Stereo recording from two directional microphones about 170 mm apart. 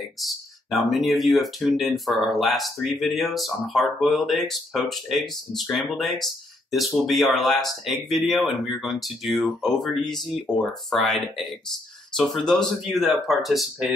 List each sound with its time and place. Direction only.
0.2 s speech: centre (ahead or behind)